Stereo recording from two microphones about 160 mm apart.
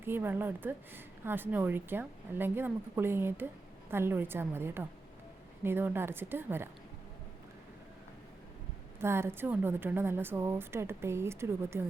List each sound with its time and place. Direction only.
0.0 s speech: 15° right (ahead or behind)
9.0 s speech: 15° right (ahead or behind)